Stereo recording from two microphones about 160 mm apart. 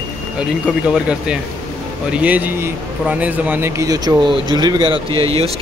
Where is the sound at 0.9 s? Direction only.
5° right (ahead or behind).